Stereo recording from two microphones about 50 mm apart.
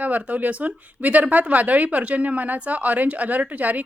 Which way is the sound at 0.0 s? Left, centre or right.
Right.